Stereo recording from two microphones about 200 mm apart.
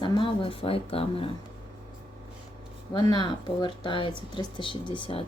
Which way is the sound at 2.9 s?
25° left (ahead or behind).